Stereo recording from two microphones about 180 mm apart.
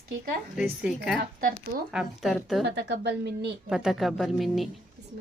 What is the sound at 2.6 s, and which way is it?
Speech, 70° right (ahead or behind).